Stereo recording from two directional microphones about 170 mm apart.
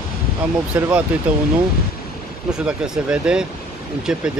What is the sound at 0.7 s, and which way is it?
Speech, 10° right (ahead or behind).